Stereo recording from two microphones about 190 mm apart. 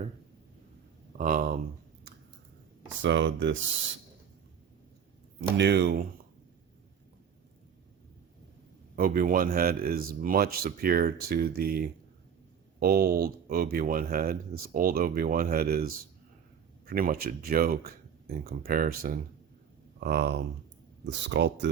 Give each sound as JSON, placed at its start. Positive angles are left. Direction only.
{"t": 1.2, "sound": "speech", "side_deg": -45}
{"t": 3.0, "sound": "speech", "side_deg": -75}
{"t": 5.5, "sound": "speech", "side_deg": -65}
{"t": 9.0, "sound": "speech", "side_deg": -50}
{"t": 20.0, "sound": "speech", "side_deg": -60}